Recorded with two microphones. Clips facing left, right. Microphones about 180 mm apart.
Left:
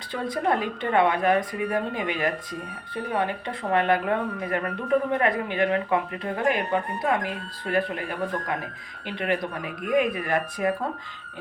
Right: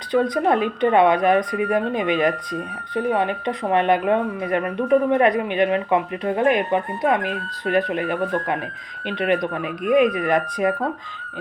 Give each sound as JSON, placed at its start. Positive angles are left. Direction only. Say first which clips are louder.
{"t": 0.1, "sound": "speech", "louder": "right 7 dB", "side_deg": -20}
{"t": 9.0, "sound": "speech", "louder": "right 6 dB", "side_deg": -20}